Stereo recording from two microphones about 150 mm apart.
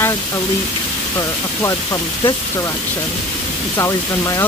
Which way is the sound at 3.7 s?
20° left (ahead or behind).